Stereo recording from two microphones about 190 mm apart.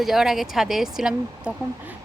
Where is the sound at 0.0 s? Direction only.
Centre (ahead or behind).